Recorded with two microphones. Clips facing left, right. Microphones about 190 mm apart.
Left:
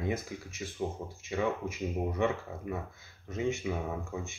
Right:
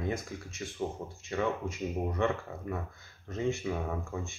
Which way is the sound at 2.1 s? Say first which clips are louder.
Even; 15° left (ahead or behind).